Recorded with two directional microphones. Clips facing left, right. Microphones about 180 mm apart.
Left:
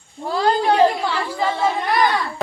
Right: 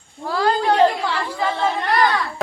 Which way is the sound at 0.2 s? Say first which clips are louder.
Left 1 dB; 20° left (ahead or behind).